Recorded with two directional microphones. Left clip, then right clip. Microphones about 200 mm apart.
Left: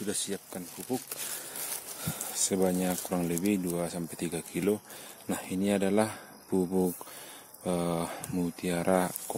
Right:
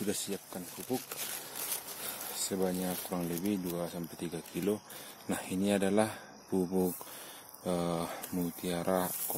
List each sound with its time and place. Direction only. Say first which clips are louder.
0.1 s speech: left 6 dB; 20° left (ahead or behind)
2.5 s speech: left 5 dB; 45° left (ahead or behind)
5.3 s speech: left 2 dB; 20° left (ahead or behind)